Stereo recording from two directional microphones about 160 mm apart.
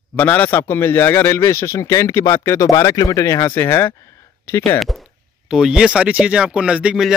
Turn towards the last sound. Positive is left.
turn(degrees=-5)  # may be behind; listen again after turning